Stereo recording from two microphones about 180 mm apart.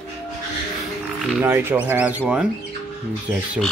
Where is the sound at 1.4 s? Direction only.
10° right (ahead or behind).